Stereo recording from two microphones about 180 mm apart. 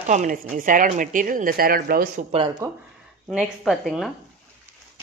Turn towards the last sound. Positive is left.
turn(degrees=0)  # may be behind; listen again after turning